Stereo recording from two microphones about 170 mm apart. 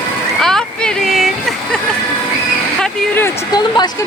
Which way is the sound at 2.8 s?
5° left (ahead or behind).